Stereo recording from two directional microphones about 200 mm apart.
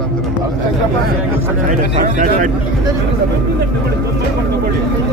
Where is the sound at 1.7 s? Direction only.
40° right (ahead or behind).